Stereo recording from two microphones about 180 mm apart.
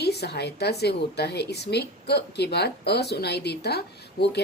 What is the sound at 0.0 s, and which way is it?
A woman's voice, 65° left (ahead or behind).